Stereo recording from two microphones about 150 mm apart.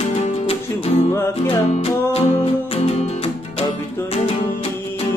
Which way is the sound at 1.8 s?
40° left (ahead or behind).